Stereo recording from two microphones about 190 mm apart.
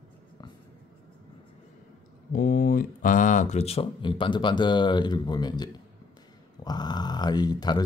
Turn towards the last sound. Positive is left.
turn(degrees=20)  # may be behind; listen again after turning